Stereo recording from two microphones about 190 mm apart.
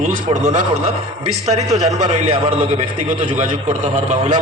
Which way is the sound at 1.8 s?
35° right (ahead or behind).